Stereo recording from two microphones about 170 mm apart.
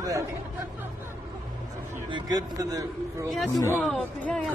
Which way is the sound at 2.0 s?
25° right (ahead or behind).